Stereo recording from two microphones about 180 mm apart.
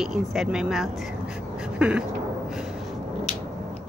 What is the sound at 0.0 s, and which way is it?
Speech, centre (ahead or behind).